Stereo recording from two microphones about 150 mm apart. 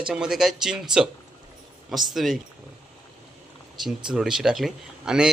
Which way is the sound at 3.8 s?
5° right (ahead or behind).